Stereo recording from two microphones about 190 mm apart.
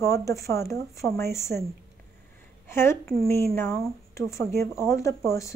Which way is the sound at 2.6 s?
10° left (ahead or behind).